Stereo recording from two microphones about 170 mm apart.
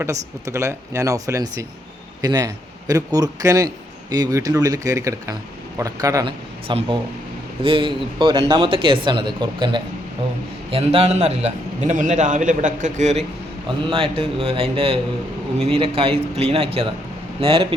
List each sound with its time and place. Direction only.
0.0 s a man's voice: 20° right (ahead or behind); by 13.2 s 40° right (ahead or behind)
13.7 s speech: 30° right (ahead or behind)